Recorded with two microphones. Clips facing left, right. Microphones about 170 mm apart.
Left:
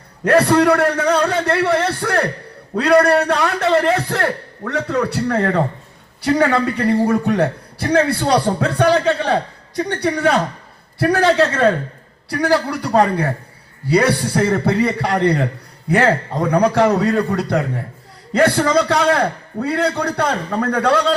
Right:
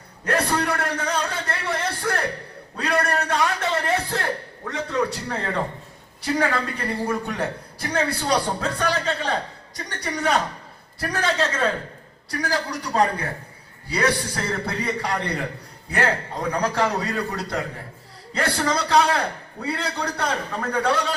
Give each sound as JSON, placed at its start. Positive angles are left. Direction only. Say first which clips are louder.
{"t": 0.3, "sound": "a man's voice", "louder": "left 10 dB", "side_deg": 65}